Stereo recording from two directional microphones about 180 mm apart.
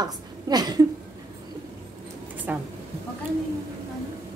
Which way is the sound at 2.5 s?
10° right (ahead or behind).